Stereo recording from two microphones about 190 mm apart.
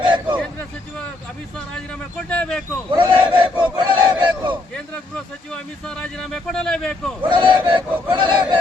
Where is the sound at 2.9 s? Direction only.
25° right (ahead or behind).